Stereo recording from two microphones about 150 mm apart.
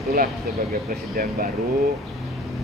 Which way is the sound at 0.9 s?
70° right (ahead or behind).